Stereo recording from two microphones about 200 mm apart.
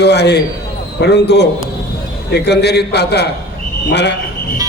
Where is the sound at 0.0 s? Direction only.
55° left (ahead or behind).